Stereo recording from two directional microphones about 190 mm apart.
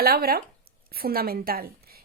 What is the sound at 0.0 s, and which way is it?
Speech, 50° right (ahead or behind).